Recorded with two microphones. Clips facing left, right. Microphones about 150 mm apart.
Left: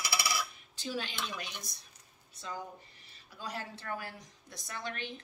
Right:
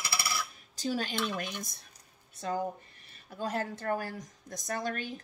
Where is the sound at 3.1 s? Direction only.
50° right (ahead or behind).